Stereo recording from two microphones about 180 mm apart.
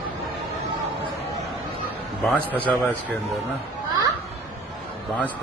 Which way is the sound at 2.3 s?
10° left (ahead or behind).